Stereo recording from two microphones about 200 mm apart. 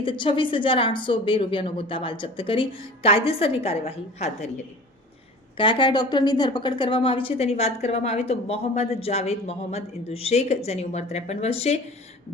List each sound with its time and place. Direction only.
0.0 s a woman's voice: 25° left (ahead or behind)
5.5 s a woman's voice: 25° left (ahead or behind)